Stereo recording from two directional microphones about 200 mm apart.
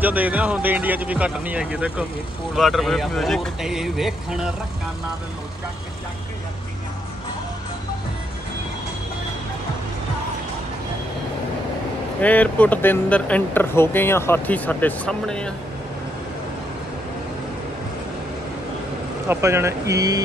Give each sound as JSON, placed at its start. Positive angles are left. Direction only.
{"t": 0.0, "sound": "speech", "side_deg": -10}
{"t": 12.2, "sound": "speech", "side_deg": 5}
{"t": 19.2, "sound": "speech", "side_deg": -15}